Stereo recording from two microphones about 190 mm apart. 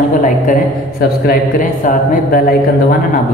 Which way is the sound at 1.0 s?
50° left (ahead or behind).